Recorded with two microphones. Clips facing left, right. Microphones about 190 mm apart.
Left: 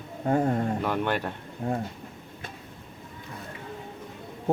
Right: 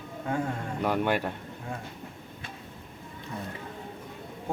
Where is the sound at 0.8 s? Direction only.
10° right (ahead or behind).